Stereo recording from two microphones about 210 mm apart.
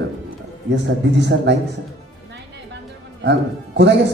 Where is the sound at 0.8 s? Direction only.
55° right (ahead or behind).